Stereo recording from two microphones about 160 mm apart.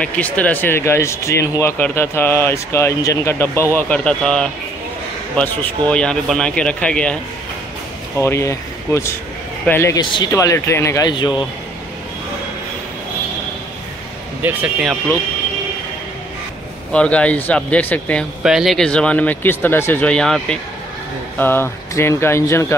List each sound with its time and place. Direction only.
0.0 s speech: 10° left (ahead or behind)
8.2 s speech: 15° left (ahead or behind)
14.4 s speech: 10° right (ahead or behind)
16.9 s speech: 5° left (ahead or behind)
18.4 s speech: 5° right (ahead or behind); by 22.8 s 15° left (ahead or behind)